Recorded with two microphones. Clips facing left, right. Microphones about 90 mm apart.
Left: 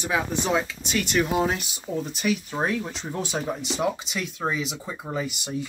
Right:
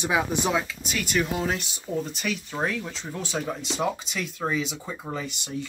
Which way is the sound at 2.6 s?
20° left (ahead or behind).